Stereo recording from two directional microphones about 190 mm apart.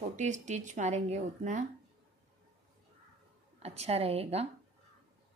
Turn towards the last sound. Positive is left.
turn(degrees=-35)  # may be behind; listen again after turning